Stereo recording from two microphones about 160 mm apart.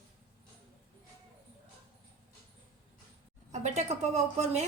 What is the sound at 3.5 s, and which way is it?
A woman's voice, 45° right (ahead or behind).